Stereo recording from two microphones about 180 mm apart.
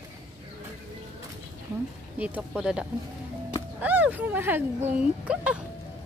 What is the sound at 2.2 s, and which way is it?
A woman's voice, 5° right (ahead or behind).